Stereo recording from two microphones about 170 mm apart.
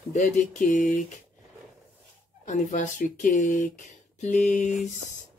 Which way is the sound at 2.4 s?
45° left (ahead or behind).